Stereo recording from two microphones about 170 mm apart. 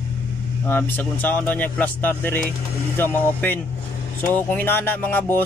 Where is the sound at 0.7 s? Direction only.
15° left (ahead or behind).